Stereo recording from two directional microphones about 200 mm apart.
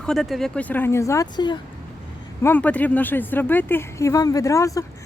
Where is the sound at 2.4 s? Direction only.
10° left (ahead or behind).